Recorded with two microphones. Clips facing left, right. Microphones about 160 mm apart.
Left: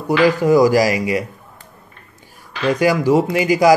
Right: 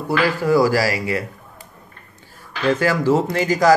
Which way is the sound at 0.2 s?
20° left (ahead or behind).